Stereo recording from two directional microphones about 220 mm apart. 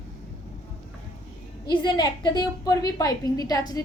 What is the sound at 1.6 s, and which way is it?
A woman's voice, 20° left (ahead or behind).